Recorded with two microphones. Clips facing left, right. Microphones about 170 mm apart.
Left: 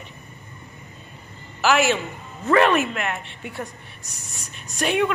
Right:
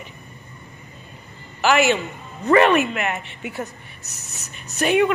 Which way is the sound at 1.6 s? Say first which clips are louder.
Right 2 dB; centre (ahead or behind).